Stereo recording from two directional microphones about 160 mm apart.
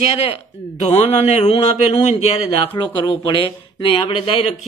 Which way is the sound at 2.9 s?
30° left (ahead or behind).